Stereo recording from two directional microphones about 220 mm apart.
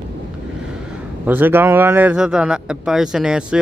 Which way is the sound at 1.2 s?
10° right (ahead or behind).